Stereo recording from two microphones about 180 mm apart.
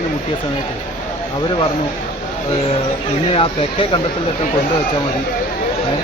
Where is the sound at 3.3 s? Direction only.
30° left (ahead or behind).